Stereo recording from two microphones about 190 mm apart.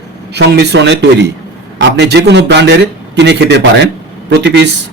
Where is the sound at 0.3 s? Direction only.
60° right (ahead or behind).